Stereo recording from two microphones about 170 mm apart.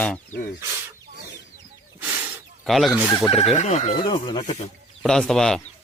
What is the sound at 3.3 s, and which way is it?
Speech, 35° left (ahead or behind).